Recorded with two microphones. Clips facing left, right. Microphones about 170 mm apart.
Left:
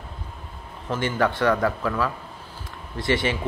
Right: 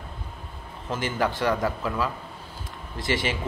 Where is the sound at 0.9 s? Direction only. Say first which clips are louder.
Left 3 dB; 10° right (ahead or behind).